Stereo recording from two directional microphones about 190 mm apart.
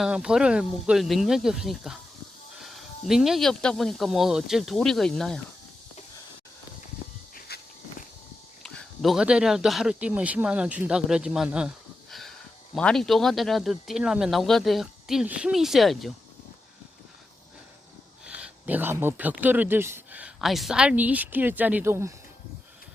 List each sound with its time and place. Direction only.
0.0 s speech: 5° right (ahead or behind)
2.6 s music: centre (ahead or behind)
3.1 s speech: centre (ahead or behind)
7.3 s walk: 55° left (ahead or behind)
8.6 s speech: centre (ahead or behind)
12.7 s speech: 5° left (ahead or behind)
18.3 s speech: 5° right (ahead or behind)